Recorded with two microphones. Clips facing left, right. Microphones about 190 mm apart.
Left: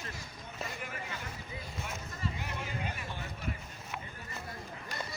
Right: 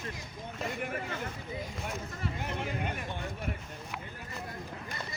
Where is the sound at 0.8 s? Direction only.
55° right (ahead or behind).